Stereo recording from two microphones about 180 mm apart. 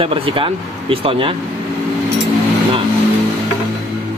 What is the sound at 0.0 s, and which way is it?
Speech, 30° right (ahead or behind).